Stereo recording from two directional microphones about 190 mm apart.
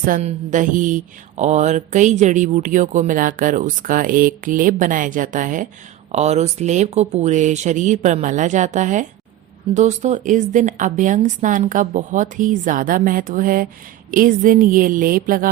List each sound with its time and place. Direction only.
0.0 s speech: 40° right (ahead or behind)